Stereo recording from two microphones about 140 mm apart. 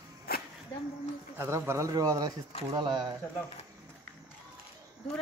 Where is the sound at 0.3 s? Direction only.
90° left.